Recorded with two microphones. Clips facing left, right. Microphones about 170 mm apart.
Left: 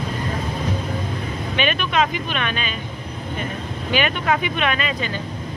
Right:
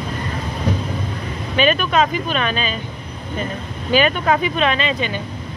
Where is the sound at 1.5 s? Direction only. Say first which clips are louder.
Right 5 dB; 35° right (ahead or behind).